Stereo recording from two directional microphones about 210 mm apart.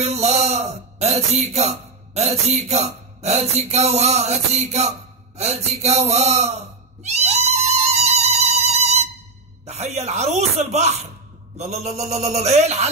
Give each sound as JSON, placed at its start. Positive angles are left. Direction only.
{"t": 0.0, "sound": "a man's voice", "side_deg": -30}
{"t": 5.4, "sound": "cat", "side_deg": -30}
{"t": 9.7, "sound": "speech", "side_deg": -30}